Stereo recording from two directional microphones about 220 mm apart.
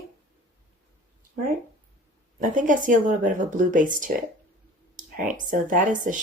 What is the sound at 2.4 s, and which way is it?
Speech, 35° right (ahead or behind).